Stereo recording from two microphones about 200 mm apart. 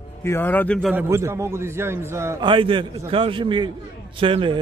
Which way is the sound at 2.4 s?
25° right (ahead or behind).